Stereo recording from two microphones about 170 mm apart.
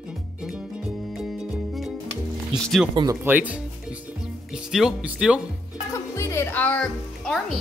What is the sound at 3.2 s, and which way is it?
Speech, 10° right (ahead or behind).